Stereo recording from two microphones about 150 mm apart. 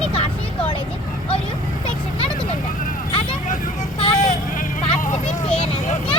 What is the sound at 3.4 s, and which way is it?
Vehicle, 55° left (ahead or behind).